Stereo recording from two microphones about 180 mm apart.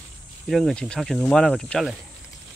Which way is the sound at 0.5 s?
Centre (ahead or behind).